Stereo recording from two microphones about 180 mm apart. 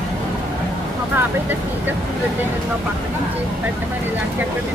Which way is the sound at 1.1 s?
10° right (ahead or behind).